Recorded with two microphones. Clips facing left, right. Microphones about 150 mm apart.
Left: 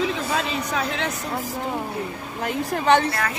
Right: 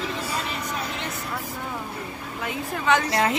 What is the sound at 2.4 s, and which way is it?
Speech, 35° left (ahead or behind).